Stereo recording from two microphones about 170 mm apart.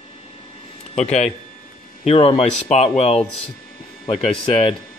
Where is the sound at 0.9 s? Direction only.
40° left (ahead or behind).